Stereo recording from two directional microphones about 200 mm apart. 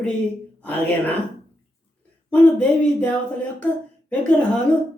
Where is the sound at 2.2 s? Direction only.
10° left (ahead or behind).